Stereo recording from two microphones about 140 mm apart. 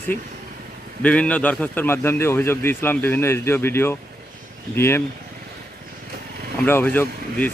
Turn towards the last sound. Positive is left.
turn(degrees=10)  # may be behind; listen again after turning